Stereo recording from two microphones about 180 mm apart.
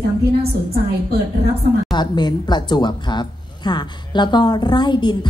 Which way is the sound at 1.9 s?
25° left (ahead or behind).